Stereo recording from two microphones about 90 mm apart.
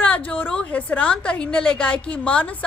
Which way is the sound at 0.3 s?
15° left (ahead or behind).